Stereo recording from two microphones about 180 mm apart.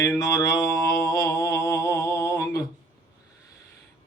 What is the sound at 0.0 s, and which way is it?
Mantra, 20° left (ahead or behind).